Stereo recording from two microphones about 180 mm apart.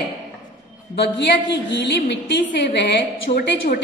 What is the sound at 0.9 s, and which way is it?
A woman's voice, 75° left (ahead or behind).